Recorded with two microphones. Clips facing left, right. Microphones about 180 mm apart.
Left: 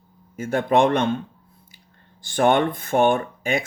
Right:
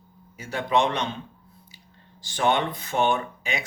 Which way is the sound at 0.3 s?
50° left (ahead or behind).